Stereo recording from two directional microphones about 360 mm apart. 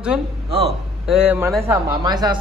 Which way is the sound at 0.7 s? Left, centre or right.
Centre.